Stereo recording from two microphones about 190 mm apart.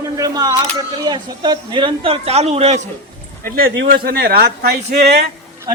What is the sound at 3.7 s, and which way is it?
Speech, 80° right.